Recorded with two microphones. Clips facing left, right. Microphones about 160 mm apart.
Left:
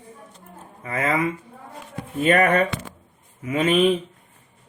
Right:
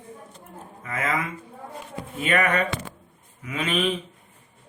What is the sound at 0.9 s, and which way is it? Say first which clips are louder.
Mantra: left 4 dB; 35° left (ahead or behind).